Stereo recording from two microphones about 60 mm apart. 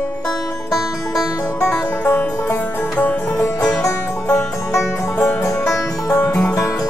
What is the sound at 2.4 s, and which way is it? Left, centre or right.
Music, left.